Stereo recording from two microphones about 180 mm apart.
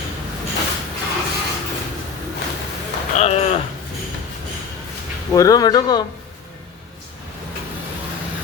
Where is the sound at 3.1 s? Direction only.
40° left (ahead or behind).